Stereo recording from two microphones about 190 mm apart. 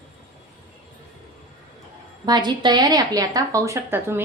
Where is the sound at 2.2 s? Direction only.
20° right (ahead or behind).